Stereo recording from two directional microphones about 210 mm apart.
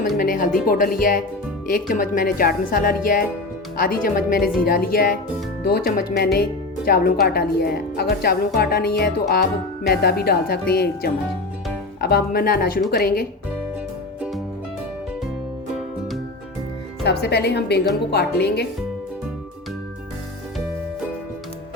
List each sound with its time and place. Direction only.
0.2 s a woman's voice: 40° left (ahead or behind)
17.0 s a woman's voice: 50° left (ahead or behind)